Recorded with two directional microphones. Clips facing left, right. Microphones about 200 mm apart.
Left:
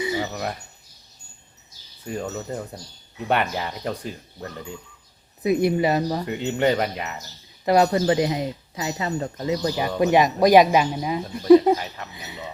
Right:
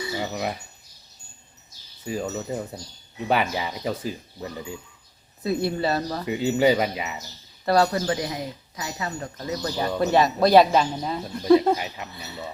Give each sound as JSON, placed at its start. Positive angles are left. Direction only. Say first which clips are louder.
{"t": 0.2, "sound": "a sound", "louder": "even", "side_deg": -5}
{"t": 2.0, "sound": "speech", "louder": "right 1 dB", "side_deg": 0}
{"t": 5.4, "sound": "speech", "louder": "left 5 dB", "side_deg": 15}
{"t": 6.2, "sound": "speech", "louder": "right 2 dB", "side_deg": -5}
{"t": 7.6, "sound": "speech", "louder": "left 3 dB", "side_deg": 15}